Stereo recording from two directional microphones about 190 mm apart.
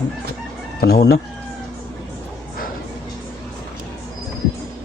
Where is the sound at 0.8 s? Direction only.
55° left (ahead or behind).